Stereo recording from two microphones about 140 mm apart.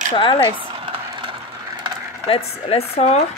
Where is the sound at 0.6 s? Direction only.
40° right (ahead or behind).